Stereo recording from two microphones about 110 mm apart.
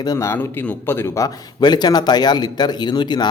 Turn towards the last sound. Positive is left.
turn(degrees=40)  # may be behind; listen again after turning